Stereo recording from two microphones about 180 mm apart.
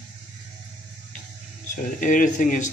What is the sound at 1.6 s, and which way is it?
A man's voice, 45° left (ahead or behind).